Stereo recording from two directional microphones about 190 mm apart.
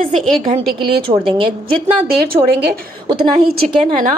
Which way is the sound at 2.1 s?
55° right (ahead or behind).